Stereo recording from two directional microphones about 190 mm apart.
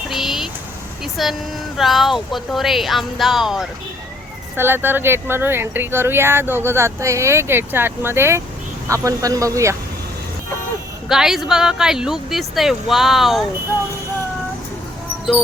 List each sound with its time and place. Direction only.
0.1 s a sound: centre (ahead or behind)
1.0 s speech: centre (ahead or behind); by 9.7 s 15° right (ahead or behind)
11.1 s speech: centre (ahead or behind)